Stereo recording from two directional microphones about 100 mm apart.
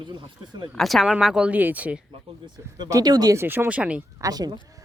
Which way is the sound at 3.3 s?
25° right (ahead or behind).